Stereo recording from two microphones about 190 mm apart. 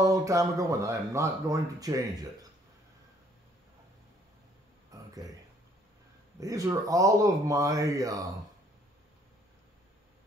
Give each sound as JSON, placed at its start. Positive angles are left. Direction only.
{"t": 0.0, "sound": "speech", "side_deg": -15}
{"t": 4.9, "sound": "a sound", "side_deg": -20}
{"t": 6.4, "sound": "speech", "side_deg": -20}